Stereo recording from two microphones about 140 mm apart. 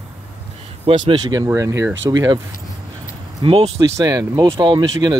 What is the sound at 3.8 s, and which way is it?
Speech, 25° right (ahead or behind).